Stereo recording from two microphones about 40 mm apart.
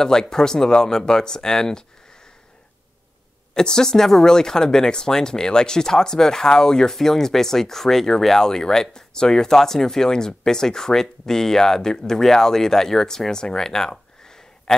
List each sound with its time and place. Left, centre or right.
0.0 s speech: centre
3.5 s speech: centre